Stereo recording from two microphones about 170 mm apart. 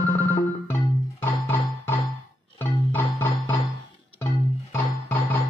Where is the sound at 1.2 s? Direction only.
15° left (ahead or behind).